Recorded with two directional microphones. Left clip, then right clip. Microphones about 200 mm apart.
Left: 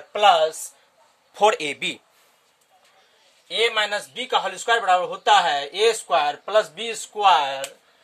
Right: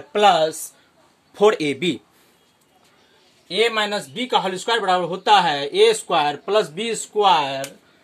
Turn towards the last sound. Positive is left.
turn(degrees=10)  # may be behind; listen again after turning